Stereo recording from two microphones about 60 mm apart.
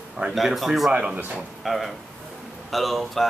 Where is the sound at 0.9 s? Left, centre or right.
Centre.